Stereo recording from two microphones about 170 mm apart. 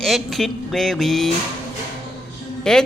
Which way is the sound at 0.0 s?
Centre (ahead or behind).